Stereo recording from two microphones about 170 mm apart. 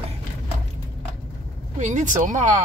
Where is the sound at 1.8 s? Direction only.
45° right (ahead or behind).